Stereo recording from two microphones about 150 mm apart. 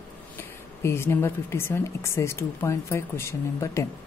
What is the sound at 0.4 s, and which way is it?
Speech, 15° left (ahead or behind).